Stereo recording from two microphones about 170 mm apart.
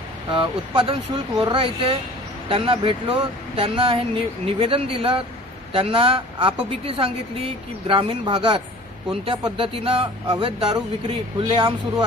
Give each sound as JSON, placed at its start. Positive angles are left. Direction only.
{"t": 0.3, "sound": "speech", "side_deg": -30}
{"t": 7.8, "sound": "speech", "side_deg": -30}